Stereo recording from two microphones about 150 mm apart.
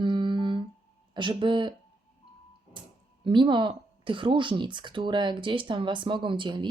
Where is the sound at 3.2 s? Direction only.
30° right (ahead or behind).